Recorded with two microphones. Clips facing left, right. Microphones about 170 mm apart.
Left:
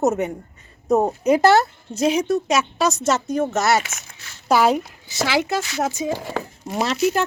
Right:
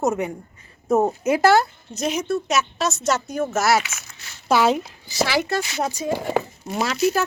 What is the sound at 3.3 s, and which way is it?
Speech, centre (ahead or behind).